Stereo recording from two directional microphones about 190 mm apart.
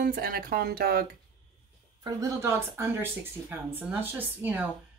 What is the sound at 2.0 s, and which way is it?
A woman's voice, 15° right (ahead or behind).